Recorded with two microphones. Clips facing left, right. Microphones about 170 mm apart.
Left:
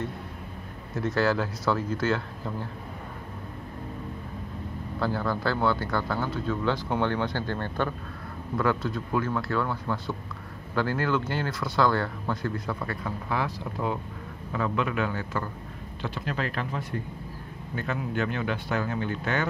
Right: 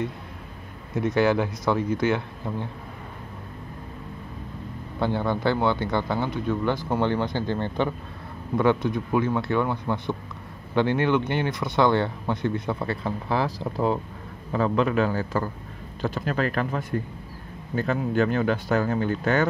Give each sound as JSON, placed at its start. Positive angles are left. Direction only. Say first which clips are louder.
{"t": 0.9, "sound": "speech", "louder": "right 4 dB", "side_deg": -20}
{"t": 4.9, "sound": "speech", "louder": "right 3 dB", "side_deg": -20}
{"t": 17.7, "sound": "speech", "louder": "right 7 dB", "side_deg": -40}